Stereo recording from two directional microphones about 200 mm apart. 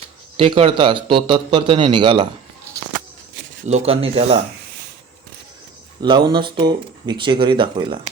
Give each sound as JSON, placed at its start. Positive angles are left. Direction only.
{"t": 0.3, "sound": "speech", "side_deg": -30}
{"t": 3.7, "sound": "speech", "side_deg": -30}
{"t": 6.0, "sound": "speech", "side_deg": -25}